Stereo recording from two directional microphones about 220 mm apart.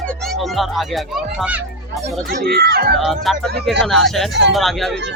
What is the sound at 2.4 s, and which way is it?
Speech, 45° right (ahead or behind).